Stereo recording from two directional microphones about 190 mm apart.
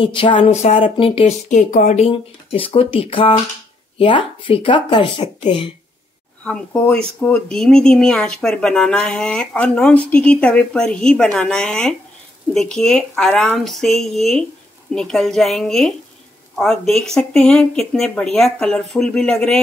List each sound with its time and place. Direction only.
0.0 s speech: 25° left (ahead or behind)
1.5 s speech: 40° left (ahead or behind); by 5.7 s 25° left (ahead or behind)
6.4 s speech: 5° left (ahead or behind)